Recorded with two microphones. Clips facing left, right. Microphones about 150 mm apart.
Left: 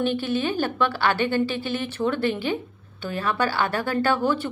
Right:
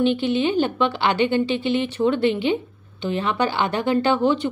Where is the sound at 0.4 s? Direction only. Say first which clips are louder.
Right 4 dB; 20° right (ahead or behind).